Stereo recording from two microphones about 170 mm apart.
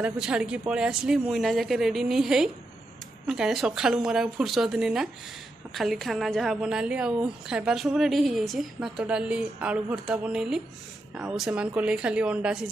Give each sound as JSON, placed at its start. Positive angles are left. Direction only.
{"t": 0.0, "sound": "a woman's voice", "side_deg": -5}